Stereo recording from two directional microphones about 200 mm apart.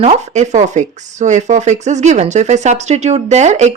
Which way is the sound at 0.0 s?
35° right (ahead or behind).